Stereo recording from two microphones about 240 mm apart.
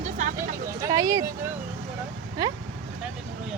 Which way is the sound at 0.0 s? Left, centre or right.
Right.